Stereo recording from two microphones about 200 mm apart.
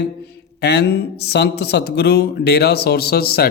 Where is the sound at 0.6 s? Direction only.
55° left (ahead or behind).